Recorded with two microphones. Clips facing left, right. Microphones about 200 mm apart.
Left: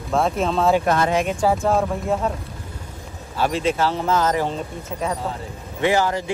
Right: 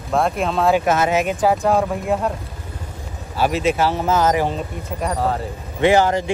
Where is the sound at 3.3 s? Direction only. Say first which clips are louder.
Right 2 dB; 10° right (ahead or behind).